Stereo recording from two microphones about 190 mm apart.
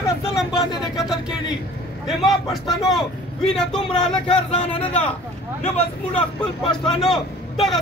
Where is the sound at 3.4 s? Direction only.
5° left (ahead or behind).